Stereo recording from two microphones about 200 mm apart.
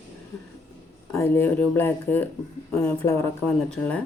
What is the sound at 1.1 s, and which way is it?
Speech, 10° left (ahead or behind).